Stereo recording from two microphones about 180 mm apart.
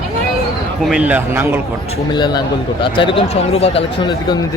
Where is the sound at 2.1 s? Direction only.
25° left (ahead or behind).